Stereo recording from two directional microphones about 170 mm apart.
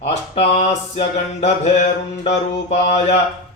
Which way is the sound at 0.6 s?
40° left (ahead or behind).